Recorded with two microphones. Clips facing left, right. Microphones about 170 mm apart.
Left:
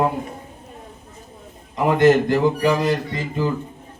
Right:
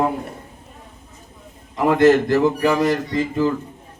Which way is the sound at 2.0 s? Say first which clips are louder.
Right 1 dB; 20° left (ahead or behind).